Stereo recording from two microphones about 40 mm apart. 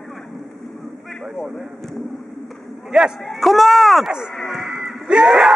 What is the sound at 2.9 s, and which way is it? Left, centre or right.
Speech, right.